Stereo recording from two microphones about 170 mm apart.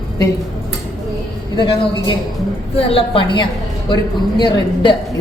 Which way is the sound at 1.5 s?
25° left (ahead or behind).